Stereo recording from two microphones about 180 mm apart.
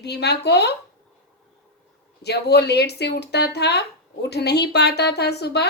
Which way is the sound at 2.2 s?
65° left (ahead or behind).